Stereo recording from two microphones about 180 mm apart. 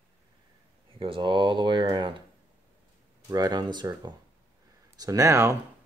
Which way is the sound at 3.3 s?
20° right (ahead or behind).